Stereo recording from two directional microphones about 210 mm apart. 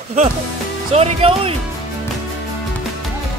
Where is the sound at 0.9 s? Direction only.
30° right (ahead or behind).